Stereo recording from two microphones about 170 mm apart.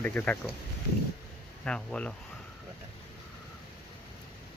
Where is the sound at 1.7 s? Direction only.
5° left (ahead or behind).